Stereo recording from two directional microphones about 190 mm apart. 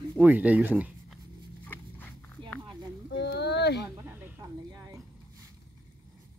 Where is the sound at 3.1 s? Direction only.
60° left (ahead or behind).